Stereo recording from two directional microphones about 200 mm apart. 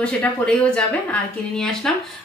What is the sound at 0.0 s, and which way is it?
Speech, 5° left (ahead or behind).